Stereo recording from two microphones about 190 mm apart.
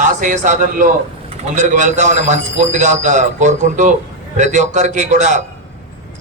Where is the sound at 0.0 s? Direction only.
40° right (ahead or behind).